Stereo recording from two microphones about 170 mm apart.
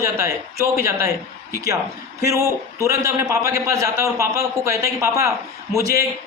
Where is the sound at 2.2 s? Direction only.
20° right (ahead or behind).